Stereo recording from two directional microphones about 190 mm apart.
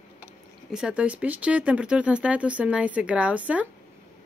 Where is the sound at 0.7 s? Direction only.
5° right (ahead or behind).